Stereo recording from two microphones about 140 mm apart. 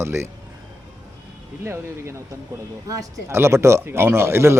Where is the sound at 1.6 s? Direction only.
20° right (ahead or behind).